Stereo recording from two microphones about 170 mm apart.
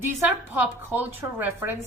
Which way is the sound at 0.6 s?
10° right (ahead or behind).